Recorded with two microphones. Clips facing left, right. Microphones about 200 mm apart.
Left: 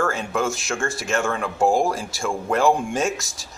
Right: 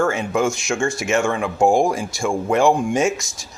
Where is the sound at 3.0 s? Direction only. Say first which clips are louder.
Right 4 dB; centre (ahead or behind).